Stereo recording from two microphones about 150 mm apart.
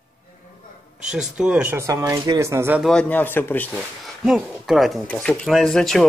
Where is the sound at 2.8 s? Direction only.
5° left (ahead or behind).